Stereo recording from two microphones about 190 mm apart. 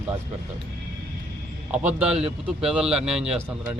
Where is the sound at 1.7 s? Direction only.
5° right (ahead or behind).